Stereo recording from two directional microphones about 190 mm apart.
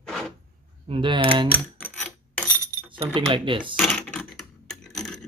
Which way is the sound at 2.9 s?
25° right (ahead or behind).